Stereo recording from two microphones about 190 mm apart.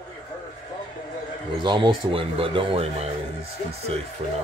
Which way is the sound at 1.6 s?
25° right (ahead or behind).